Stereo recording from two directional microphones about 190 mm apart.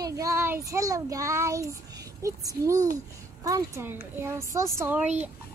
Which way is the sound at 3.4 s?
15° right (ahead or behind).